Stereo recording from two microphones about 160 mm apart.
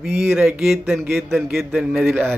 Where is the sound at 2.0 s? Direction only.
10° right (ahead or behind).